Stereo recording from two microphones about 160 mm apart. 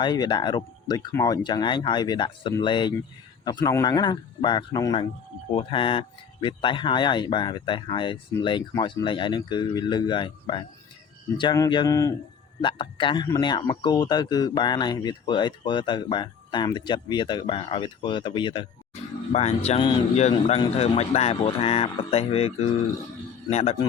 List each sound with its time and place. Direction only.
0.0 s speech: 25° left (ahead or behind)
12.6 s speech: 30° left (ahead or behind)
19.3 s speech: 45° left (ahead or behind)